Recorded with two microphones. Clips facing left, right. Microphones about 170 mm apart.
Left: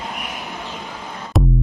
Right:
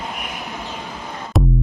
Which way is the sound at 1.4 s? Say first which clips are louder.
Even; centre (ahead or behind).